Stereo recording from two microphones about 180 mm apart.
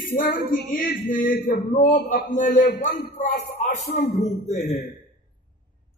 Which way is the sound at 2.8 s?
40° left (ahead or behind).